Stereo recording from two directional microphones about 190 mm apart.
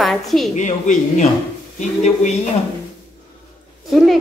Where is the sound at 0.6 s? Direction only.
40° left (ahead or behind).